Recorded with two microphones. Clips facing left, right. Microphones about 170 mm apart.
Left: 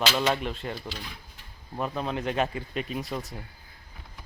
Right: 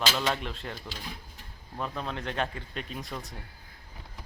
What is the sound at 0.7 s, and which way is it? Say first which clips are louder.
Speech: left 3 dB; 45° right (ahead or behind).